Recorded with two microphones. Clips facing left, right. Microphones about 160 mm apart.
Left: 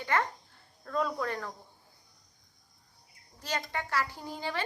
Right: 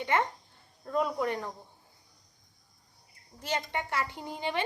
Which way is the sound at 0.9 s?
20° right (ahead or behind).